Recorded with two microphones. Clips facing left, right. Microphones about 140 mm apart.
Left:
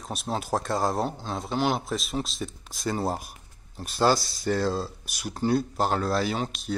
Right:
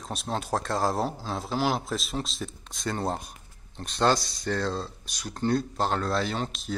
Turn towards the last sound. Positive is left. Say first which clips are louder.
# left 2 dB
turn(degrees=0)  # may be behind; listen again after turning